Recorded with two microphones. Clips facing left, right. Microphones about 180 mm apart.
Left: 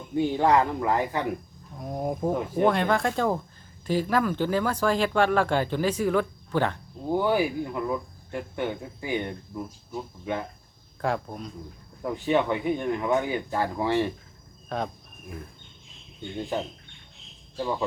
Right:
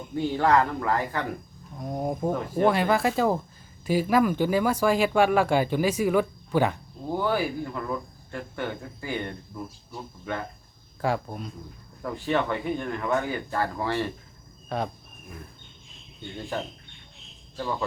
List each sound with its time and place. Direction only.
0.2 s speech: 15° left (ahead or behind)
1.8 s speech: centre (ahead or behind)
7.1 s speech: 15° left (ahead or behind)
11.0 s speech: centre (ahead or behind)
12.0 s speech: 15° left (ahead or behind)
14.7 s speech: centre (ahead or behind)
17.6 s speech: 15° left (ahead or behind)